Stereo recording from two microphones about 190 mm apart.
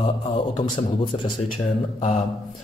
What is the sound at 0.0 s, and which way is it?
Speech, 30° left (ahead or behind).